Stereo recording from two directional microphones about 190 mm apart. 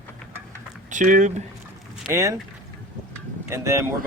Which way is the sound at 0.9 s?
40° right (ahead or behind).